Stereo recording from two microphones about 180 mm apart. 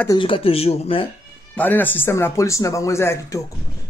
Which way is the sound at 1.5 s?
10° left (ahead or behind).